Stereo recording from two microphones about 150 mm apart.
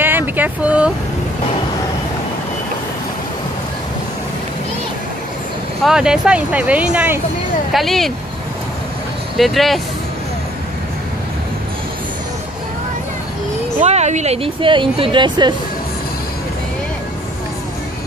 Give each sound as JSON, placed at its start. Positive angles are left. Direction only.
{"t": 0.0, "sound": "a sound", "side_deg": -15}
{"t": 5.9, "sound": "speech", "side_deg": -5}
{"t": 7.7, "sound": "speech", "side_deg": 0}
{"t": 9.4, "sound": "speech", "side_deg": 0}
{"t": 13.7, "sound": "speech", "side_deg": -45}